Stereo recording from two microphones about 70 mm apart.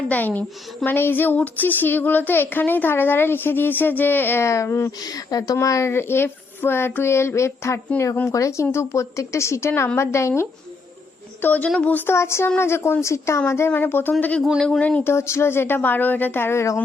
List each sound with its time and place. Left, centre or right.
0.1 s speech: left
4.4 s speech: left
4.9 s speech: left
5.5 s speech: left
8.3 s speech: left
11.4 s speech: left
12.0 s speech: left; by 15.0 s centre
15.0 s speech: left